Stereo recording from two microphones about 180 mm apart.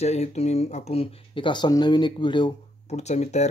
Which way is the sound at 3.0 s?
40° left (ahead or behind).